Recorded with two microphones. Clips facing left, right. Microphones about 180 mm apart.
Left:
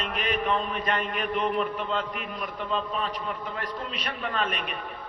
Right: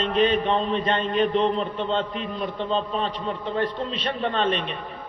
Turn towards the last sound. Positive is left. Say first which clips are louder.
# right 6 dB
turn(degrees=-30)  # may be behind; listen again after turning